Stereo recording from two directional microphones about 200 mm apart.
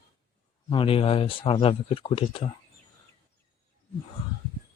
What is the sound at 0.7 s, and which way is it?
Speech, 25° left (ahead or behind).